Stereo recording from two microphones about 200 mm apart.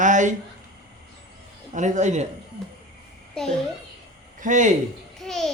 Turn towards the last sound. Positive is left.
turn(degrees=0)  # may be behind; listen again after turning